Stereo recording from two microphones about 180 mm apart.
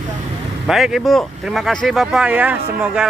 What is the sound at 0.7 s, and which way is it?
Speech, centre (ahead or behind).